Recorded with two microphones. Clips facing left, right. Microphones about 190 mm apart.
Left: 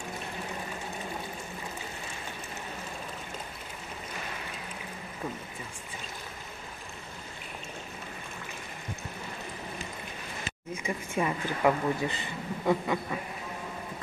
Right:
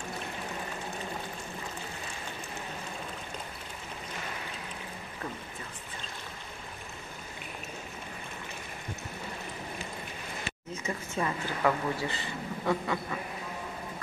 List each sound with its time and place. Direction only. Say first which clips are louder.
10.8 s a woman's voice: left 2 dB; 15° left (ahead or behind)